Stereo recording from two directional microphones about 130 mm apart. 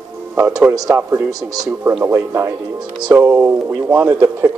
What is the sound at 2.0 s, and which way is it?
Speech, 20° right (ahead or behind).